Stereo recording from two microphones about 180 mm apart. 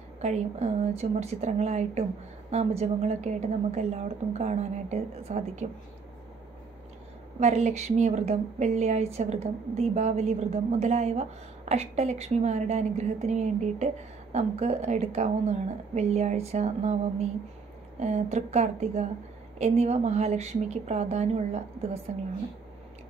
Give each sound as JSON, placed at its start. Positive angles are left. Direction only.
{"t": 0.2, "sound": "a woman's voice", "side_deg": -35}
{"t": 7.3, "sound": "a woman's voice", "side_deg": -40}